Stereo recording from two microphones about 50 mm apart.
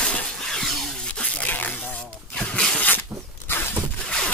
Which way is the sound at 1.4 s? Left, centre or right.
Left.